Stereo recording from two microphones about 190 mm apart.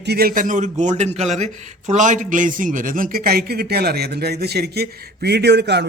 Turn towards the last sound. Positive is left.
turn(degrees=-60)  # may be behind; listen again after turning